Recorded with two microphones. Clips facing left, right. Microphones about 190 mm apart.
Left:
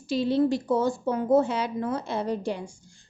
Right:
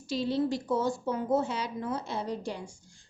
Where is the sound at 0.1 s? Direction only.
55° left (ahead or behind).